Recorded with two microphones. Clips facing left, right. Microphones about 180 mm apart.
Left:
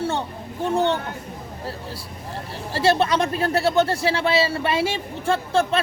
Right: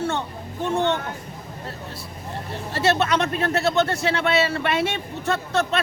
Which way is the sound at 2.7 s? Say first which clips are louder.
Left 2 dB; 30° left (ahead or behind).